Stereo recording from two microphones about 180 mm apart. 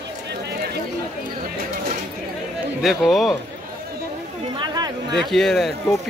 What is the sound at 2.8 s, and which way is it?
Speech, centre (ahead or behind).